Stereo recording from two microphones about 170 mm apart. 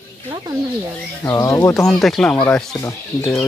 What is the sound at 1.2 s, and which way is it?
Speech, 15° left (ahead or behind).